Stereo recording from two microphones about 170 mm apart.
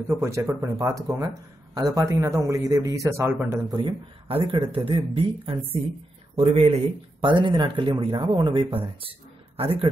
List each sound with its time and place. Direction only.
0.2 s speech: 15° right (ahead or behind)
3.7 s a man's voice: 30° right (ahead or behind)